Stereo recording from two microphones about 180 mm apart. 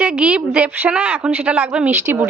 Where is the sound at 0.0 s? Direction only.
5° right (ahead or behind).